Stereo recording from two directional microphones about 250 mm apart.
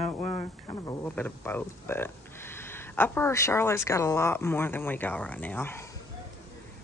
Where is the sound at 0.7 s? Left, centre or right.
Centre.